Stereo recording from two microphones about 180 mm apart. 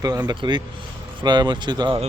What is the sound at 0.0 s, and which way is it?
A man's voice, 20° right (ahead or behind).